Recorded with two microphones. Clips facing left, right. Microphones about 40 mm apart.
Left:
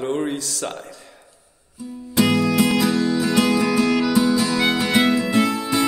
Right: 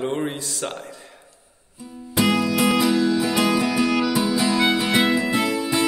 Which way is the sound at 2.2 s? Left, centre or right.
Centre.